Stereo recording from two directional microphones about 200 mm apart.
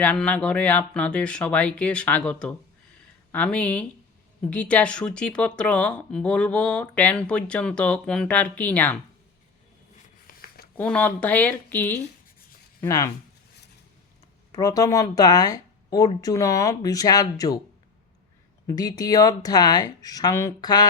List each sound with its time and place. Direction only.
0.0 s speech: 5° left (ahead or behind)
10.2 s a sound: 50° left (ahead or behind)
10.8 s speech: 5° left (ahead or behind)
14.5 s speech: 20° left (ahead or behind)
18.7 s speech: 20° left (ahead or behind)